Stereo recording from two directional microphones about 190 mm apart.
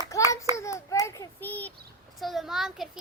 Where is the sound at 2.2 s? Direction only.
Centre (ahead or behind).